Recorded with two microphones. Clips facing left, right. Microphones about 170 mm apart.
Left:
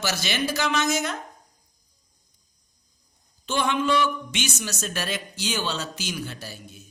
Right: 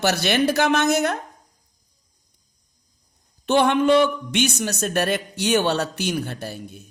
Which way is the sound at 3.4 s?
60° right (ahead or behind).